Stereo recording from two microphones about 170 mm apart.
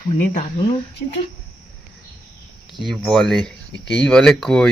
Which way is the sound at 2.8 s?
Centre (ahead or behind).